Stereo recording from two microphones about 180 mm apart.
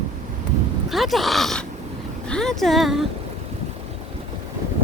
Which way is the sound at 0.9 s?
Centre (ahead or behind).